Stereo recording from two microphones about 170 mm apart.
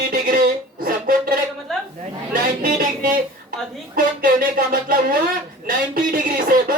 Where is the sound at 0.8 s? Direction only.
55° right (ahead or behind).